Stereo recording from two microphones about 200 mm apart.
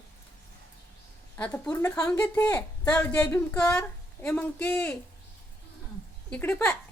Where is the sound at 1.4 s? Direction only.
5° left (ahead or behind).